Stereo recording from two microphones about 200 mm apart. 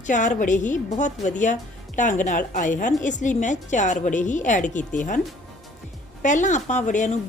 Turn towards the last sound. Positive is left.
turn(degrees=35)  # may be behind; listen again after turning